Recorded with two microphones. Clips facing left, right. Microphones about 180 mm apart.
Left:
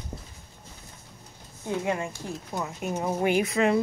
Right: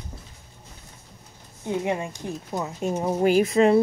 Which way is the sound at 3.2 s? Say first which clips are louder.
Right 6 dB; 30° right (ahead or behind).